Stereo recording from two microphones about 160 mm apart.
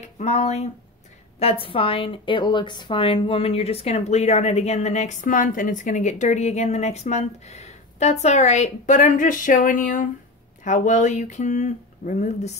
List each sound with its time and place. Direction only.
0.0 s a woman's voice: 45° left (ahead or behind)